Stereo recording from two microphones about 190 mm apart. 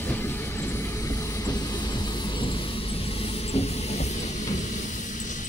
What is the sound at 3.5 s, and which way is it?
Music, 35° left (ahead or behind).